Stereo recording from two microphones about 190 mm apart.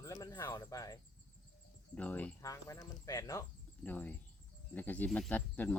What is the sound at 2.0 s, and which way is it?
Speech, 10° left (ahead or behind).